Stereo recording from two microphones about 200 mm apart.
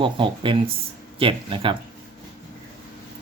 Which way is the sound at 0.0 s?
25° right (ahead or behind).